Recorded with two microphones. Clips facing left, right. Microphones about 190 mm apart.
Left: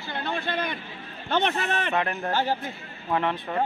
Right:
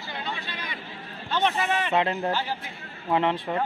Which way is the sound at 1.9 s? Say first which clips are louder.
Right 2 dB; 20° right (ahead or behind).